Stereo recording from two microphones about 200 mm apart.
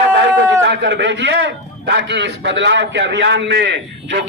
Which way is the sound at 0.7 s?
60° right (ahead or behind).